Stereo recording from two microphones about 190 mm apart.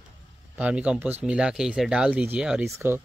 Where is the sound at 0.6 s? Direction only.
5° right (ahead or behind).